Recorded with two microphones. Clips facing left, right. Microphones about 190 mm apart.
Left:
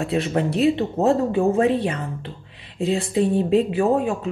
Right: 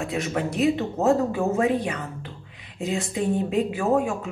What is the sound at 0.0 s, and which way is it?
A woman's voice, 35° left (ahead or behind).